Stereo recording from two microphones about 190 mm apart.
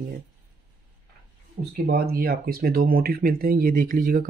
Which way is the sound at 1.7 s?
55° right (ahead or behind).